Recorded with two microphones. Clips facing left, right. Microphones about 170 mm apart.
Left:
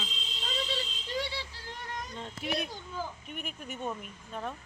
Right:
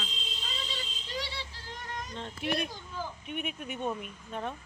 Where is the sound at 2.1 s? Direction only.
10° left (ahead or behind).